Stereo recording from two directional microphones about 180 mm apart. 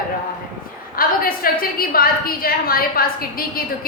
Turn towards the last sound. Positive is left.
turn(degrees=55)  # may be behind; listen again after turning